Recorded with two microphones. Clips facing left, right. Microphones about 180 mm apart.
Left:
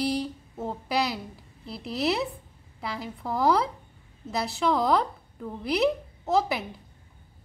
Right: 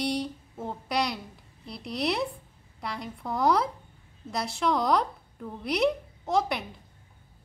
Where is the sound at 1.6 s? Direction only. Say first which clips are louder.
Left 2 dB; 5° left (ahead or behind).